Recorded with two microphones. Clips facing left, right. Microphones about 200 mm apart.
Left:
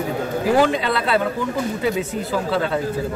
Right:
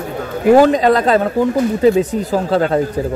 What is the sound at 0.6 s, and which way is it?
Speech, 40° right (ahead or behind).